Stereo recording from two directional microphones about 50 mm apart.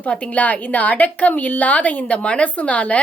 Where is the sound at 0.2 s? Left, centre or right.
Left.